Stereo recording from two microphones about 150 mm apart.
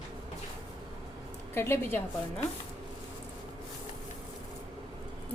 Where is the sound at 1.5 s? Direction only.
15° left (ahead or behind).